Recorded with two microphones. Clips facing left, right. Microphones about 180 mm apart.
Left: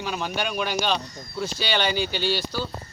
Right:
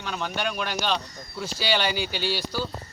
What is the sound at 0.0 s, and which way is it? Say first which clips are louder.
Speech: left 1 dB; 5° left (ahead or behind).